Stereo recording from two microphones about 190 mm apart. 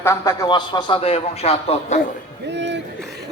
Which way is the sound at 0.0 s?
15° left (ahead or behind).